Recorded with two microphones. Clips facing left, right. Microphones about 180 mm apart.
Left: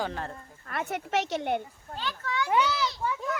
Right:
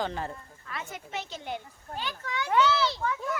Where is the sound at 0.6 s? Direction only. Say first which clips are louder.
Left 7 dB; 60° left (ahead or behind).